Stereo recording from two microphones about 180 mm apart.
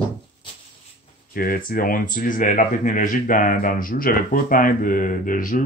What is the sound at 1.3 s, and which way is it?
Speech, 55° left (ahead or behind).